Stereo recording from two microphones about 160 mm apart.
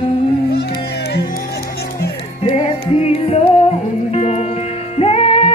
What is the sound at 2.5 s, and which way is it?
Music, 40° left (ahead or behind).